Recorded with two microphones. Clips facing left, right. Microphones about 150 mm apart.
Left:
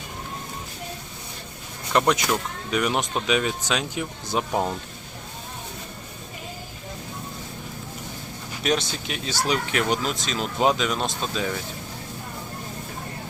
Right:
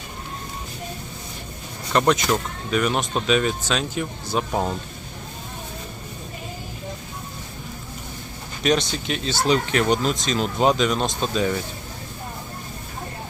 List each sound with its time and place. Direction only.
1.9 s speech: 10° left (ahead or behind)
8.6 s speech: 5° left (ahead or behind)